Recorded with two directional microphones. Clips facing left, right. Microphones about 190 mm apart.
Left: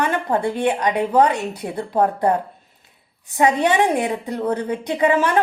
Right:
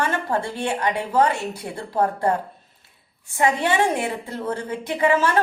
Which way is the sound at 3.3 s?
20° left (ahead or behind).